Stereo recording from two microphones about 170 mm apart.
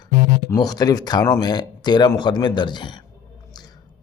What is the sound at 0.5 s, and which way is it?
Speech, 20° left (ahead or behind).